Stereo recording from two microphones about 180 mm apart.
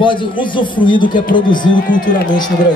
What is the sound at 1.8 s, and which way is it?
Speech, 45° left (ahead or behind).